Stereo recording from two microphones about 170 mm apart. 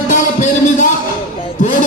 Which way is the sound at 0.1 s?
50° left (ahead or behind).